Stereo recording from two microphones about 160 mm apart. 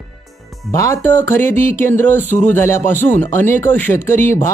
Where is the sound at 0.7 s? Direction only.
20° left (ahead or behind).